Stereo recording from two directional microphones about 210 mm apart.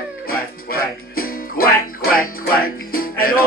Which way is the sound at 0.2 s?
45° left (ahead or behind).